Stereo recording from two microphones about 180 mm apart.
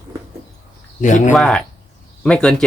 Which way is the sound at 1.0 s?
45° left (ahead or behind).